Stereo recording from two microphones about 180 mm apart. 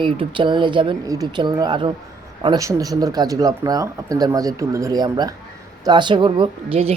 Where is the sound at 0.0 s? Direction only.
25° right (ahead or behind).